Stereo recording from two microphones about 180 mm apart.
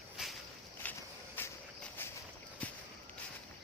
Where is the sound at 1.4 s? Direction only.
10° left (ahead or behind).